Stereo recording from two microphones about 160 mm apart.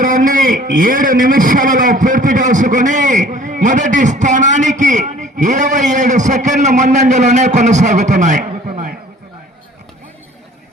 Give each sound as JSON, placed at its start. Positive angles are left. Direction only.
{"t": 0.0, "sound": "a man's voice", "side_deg": -55}